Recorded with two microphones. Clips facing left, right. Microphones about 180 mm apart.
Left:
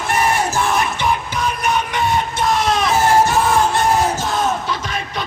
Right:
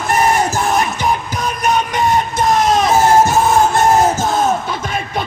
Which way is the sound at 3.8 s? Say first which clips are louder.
Right 4 dB; 45° right (ahead or behind).